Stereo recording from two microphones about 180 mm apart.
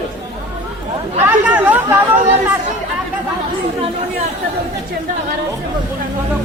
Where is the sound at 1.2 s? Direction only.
10° right (ahead or behind).